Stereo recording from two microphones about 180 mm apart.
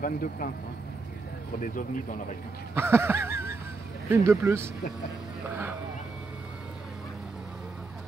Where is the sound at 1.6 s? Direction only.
50° left (ahead or behind).